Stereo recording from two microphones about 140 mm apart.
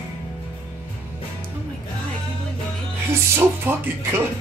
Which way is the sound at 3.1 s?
20° right (ahead or behind).